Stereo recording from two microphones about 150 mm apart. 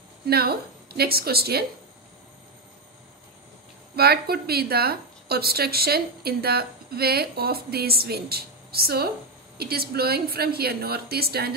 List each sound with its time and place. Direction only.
0.3 s a woman's voice: 90° right
3.9 s a woman's voice: 90° right